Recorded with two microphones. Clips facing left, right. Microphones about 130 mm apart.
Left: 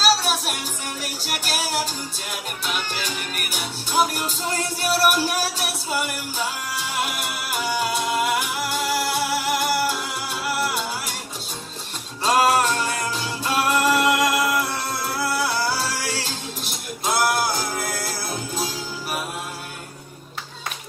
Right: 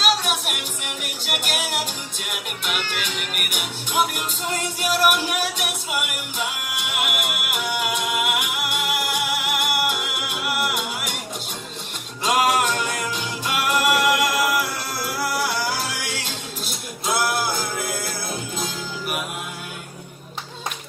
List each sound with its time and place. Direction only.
0.0 s music: 35° left (ahead or behind)
12.2 s music: 30° left (ahead or behind)